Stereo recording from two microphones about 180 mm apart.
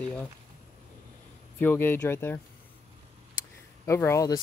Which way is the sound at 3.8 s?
15° left (ahead or behind).